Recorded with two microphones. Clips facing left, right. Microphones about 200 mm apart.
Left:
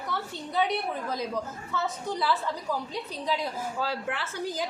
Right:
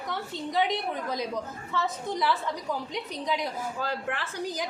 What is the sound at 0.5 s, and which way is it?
Speech, 20° right (ahead or behind).